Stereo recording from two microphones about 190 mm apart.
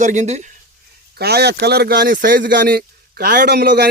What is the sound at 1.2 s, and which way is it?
Speech, 60° right (ahead or behind).